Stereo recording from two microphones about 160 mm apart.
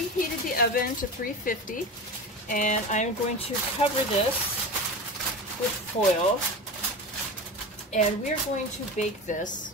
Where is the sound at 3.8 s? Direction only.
35° left (ahead or behind).